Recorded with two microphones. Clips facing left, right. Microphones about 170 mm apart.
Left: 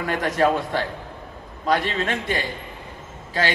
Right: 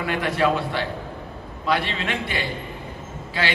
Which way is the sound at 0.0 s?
45° left (ahead or behind).